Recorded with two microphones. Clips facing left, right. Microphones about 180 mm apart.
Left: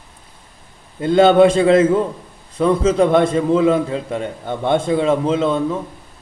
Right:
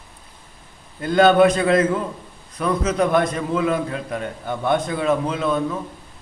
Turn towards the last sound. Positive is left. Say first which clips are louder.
# left 4 dB
turn(degrees=25)  # may be behind; listen again after turning